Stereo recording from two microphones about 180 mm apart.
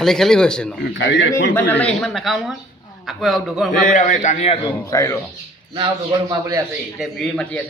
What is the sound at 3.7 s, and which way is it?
A man's voice, 45° left (ahead or behind).